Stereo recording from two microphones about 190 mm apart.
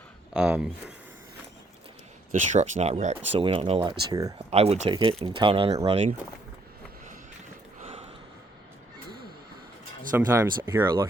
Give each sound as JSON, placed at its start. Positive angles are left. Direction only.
{"t": 0.3, "sound": "speech", "side_deg": -5}
{"t": 2.3, "sound": "speech", "side_deg": -40}
{"t": 4.5, "sound": "speech", "side_deg": -35}
{"t": 10.1, "sound": "speech", "side_deg": -10}